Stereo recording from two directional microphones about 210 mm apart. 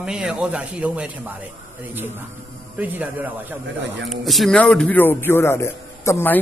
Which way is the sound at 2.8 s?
10° right (ahead or behind).